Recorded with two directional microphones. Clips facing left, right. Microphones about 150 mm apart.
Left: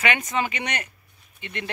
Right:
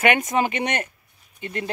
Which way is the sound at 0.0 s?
50° right (ahead or behind).